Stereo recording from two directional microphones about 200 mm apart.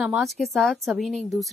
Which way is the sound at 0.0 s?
Centre (ahead or behind).